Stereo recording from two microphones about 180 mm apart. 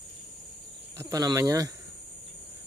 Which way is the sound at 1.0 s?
20° right (ahead or behind).